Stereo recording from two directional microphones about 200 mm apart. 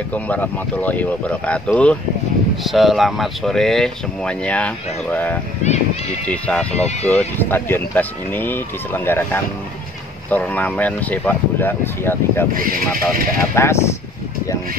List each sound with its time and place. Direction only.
0.1 s speech: 10° left (ahead or behind)
12.5 s speech: 45° right (ahead or behind)
13.6 s speech: 15° left (ahead or behind)